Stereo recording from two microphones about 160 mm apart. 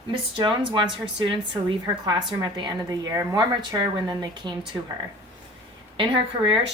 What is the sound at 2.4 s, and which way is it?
A woman's voice, 25° right (ahead or behind).